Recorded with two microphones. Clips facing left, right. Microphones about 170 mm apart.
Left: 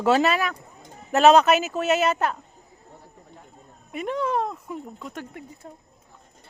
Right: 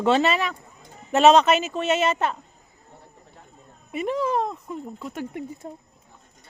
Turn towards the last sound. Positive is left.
turn(degrees=-20)  # may be behind; listen again after turning